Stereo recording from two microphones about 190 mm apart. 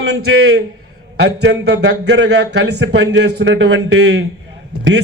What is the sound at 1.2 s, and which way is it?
A man's voice, 65° right (ahead or behind).